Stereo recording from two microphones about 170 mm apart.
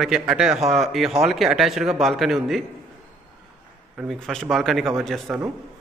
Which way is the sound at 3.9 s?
Centre (ahead or behind).